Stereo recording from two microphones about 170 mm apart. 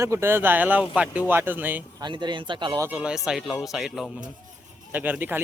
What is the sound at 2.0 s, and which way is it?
Speech, 25° right (ahead or behind).